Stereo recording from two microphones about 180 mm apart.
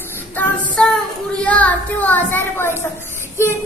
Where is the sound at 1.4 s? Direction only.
10° left (ahead or behind).